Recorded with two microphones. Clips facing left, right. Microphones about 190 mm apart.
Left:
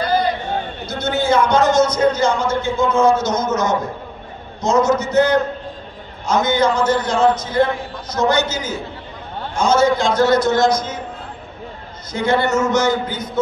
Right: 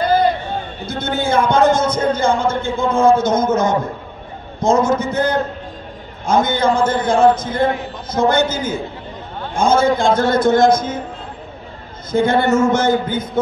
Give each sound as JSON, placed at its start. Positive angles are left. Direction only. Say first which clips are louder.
{"t": 0.8, "sound": "a man's voice", "louder": "left 1 dB", "side_deg": -55}
{"t": 12.1, "sound": "a man's voice", "louder": "right 3 dB", "side_deg": -55}